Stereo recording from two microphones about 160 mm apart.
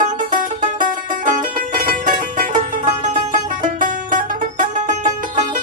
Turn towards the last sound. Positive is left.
turn(degrees=-50)  # may be behind; listen again after turning